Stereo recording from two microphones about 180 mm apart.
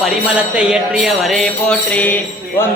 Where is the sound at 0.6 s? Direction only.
5° right (ahead or behind).